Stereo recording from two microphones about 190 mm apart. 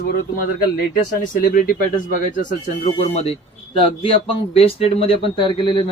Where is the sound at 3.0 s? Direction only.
35° left (ahead or behind).